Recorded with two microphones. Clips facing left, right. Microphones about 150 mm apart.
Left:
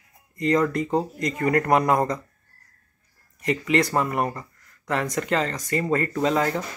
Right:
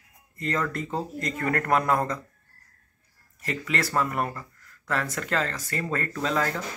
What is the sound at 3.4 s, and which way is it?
Speech, 10° left (ahead or behind).